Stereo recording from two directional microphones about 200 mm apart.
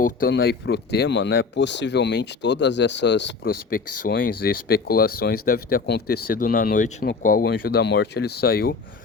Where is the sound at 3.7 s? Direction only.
45° left (ahead or behind).